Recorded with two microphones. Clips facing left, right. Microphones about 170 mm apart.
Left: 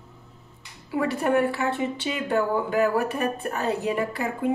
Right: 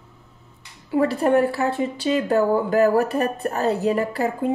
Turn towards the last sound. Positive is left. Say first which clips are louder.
# right 5 dB
turn(degrees=-35)  # may be behind; listen again after turning